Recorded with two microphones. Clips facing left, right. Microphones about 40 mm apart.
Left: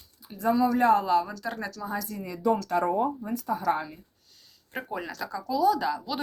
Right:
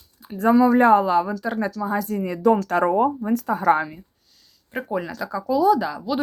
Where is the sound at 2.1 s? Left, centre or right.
Right.